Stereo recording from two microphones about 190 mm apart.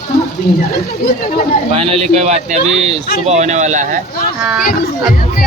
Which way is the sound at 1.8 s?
30° right (ahead or behind).